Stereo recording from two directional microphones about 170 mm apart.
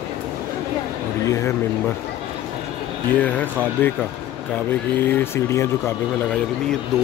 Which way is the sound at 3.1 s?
10° left (ahead or behind).